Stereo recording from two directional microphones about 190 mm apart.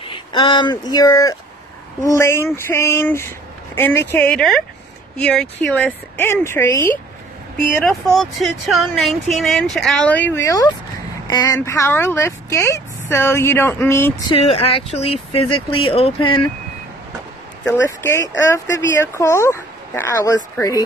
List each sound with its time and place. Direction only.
0.0 s speech: 25° left (ahead or behind)
7.8 s speech: centre (ahead or behind)
14.3 s speech: 30° left (ahead or behind)
17.6 s speech: 15° left (ahead or behind)